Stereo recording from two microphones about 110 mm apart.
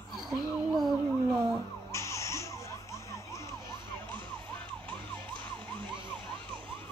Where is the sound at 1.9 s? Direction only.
25° left (ahead or behind).